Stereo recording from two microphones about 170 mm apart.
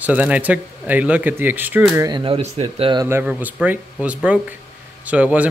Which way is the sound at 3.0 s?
15° right (ahead or behind).